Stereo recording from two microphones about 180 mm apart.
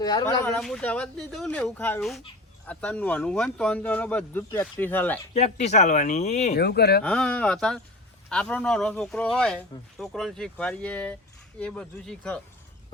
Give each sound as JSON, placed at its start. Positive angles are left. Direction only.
{"t": 0.0, "sound": "speech", "side_deg": 20}
{"t": 0.4, "sound": "speech", "side_deg": 5}
{"t": 5.3, "sound": "speech", "side_deg": 35}
{"t": 6.5, "sound": "speech", "side_deg": 65}
{"t": 7.0, "sound": "speech", "side_deg": 5}